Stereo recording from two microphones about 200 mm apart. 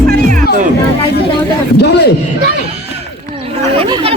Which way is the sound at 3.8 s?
25° right (ahead or behind).